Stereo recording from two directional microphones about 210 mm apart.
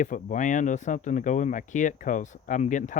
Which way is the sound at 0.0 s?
35° left (ahead or behind).